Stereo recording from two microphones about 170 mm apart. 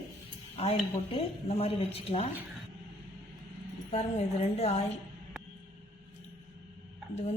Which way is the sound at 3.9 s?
40° left (ahead or behind).